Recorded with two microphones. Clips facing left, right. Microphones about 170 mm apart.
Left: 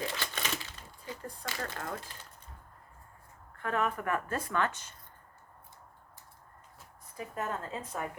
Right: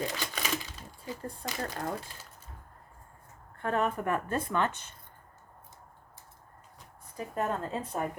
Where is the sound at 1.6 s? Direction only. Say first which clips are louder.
Right 4 dB; 35° right (ahead or behind).